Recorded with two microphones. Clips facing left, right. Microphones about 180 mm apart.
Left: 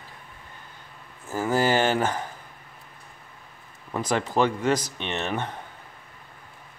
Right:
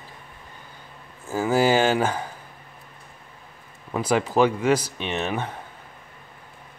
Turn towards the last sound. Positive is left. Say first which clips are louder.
# right 2 dB
turn(degrees=-10)  # may be behind; listen again after turning